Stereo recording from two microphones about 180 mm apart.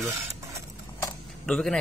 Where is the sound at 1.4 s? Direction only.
5° left (ahead or behind).